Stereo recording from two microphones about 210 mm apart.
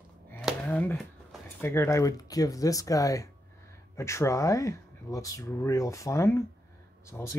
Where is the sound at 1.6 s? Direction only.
10° left (ahead or behind).